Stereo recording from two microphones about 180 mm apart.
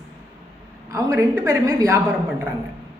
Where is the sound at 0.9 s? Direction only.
15° right (ahead or behind).